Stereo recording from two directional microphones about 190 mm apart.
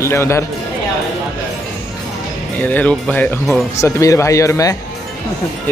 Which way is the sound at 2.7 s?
10° left (ahead or behind).